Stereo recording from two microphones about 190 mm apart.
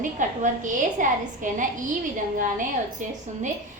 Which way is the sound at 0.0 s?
40° right (ahead or behind).